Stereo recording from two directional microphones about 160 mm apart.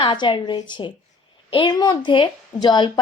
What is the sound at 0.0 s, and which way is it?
A woman's voice, 30° left (ahead or behind).